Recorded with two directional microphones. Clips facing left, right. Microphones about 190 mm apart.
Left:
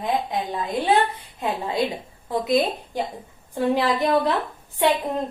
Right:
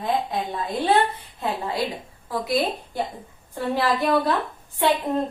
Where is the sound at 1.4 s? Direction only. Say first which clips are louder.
Left 2 dB; 20° left (ahead or behind).